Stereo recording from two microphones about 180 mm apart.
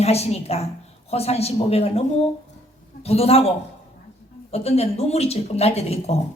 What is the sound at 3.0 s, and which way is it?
A woman's voice, 35° left (ahead or behind).